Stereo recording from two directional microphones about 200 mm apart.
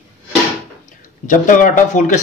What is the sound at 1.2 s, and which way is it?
A man's voice, 40° left (ahead or behind).